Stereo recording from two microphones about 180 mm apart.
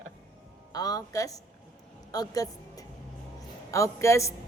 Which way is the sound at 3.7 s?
15° left (ahead or behind).